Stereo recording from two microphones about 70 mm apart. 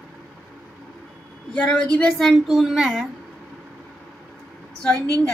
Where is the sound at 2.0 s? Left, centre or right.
Centre.